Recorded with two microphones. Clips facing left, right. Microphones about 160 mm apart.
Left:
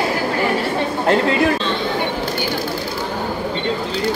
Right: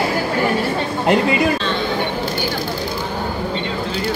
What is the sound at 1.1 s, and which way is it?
Speech, 15° right (ahead or behind).